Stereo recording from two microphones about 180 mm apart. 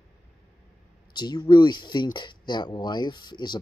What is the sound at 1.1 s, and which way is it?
Speech, 25° left (ahead or behind).